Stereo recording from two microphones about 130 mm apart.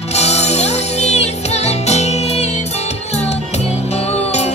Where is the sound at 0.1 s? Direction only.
55° left (ahead or behind).